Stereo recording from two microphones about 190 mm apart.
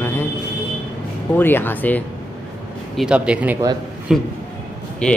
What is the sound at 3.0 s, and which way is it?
A man's voice, 5° right (ahead or behind).